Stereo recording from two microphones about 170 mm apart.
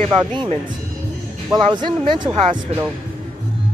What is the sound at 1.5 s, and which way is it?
Speech, 25° right (ahead or behind).